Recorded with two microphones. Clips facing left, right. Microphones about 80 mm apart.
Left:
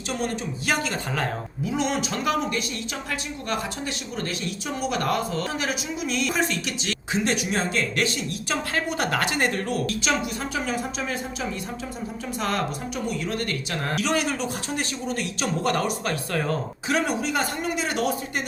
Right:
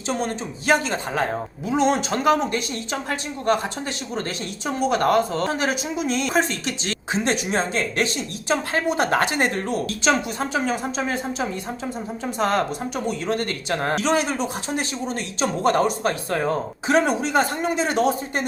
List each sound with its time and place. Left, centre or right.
0.1 s speech: right